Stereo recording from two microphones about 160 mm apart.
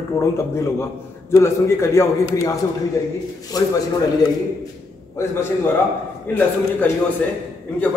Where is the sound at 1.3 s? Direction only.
15° left (ahead or behind).